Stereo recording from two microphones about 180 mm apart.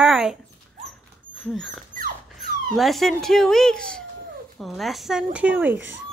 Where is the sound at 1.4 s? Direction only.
Centre (ahead or behind).